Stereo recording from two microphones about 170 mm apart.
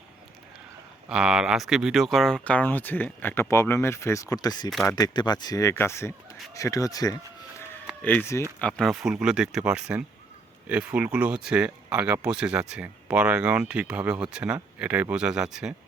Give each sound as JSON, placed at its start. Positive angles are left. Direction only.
{"t": 1.0, "sound": "speech", "side_deg": -5}